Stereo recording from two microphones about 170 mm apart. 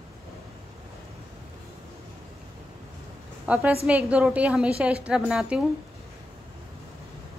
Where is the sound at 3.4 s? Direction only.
5° right (ahead or behind).